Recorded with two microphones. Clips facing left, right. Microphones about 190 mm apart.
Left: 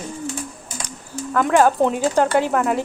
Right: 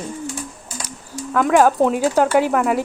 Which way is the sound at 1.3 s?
Centre (ahead or behind).